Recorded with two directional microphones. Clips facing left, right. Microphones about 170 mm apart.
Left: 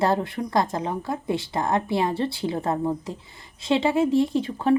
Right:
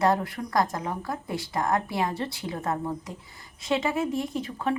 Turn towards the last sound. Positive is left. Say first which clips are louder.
# left 7 dB
turn(degrees=30)  # may be behind; listen again after turning